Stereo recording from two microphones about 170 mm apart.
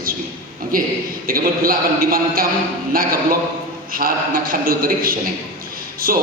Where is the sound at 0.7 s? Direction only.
55° right (ahead or behind).